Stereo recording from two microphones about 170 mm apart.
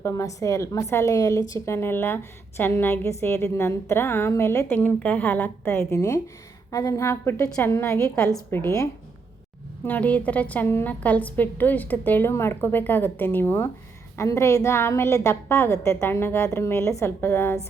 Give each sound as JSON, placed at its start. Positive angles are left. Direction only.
{"t": 0.0, "sound": "a woman's voice", "side_deg": 20}